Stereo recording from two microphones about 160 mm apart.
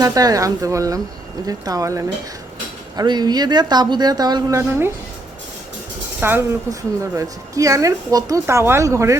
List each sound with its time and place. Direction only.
0.0 s a woman's voice: 25° right (ahead or behind)
6.1 s a woman's voice: 15° right (ahead or behind)